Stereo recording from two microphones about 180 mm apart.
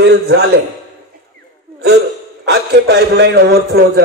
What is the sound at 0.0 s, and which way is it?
Speech, 65° right (ahead or behind).